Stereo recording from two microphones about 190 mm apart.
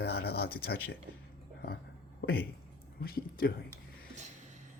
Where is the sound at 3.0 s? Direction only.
55° left (ahead or behind).